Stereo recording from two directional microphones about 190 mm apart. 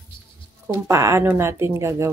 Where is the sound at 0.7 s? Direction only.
15° right (ahead or behind).